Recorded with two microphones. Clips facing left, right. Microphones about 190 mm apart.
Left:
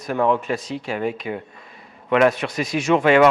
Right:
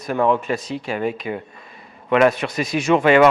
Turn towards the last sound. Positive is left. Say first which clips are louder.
# right 1 dB
turn(degrees=-15)  # may be behind; listen again after turning